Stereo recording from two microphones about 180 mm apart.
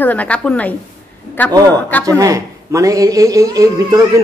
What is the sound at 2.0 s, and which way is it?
A man's voice, 20° right (ahead or behind).